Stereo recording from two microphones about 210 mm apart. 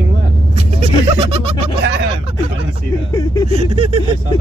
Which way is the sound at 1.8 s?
60° right (ahead or behind).